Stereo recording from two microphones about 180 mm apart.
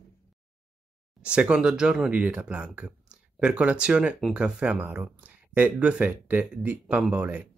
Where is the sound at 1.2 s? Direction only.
5° right (ahead or behind).